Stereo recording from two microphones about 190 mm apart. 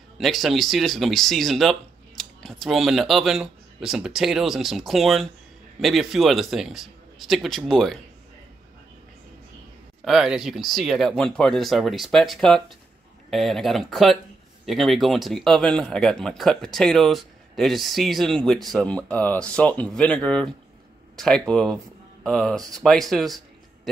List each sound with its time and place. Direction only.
0.2 s speech: centre (ahead or behind)
10.0 s speech: 5° right (ahead or behind)